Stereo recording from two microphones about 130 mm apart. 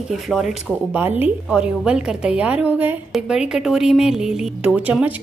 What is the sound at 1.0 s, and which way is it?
A woman's voice, 15° right (ahead or behind).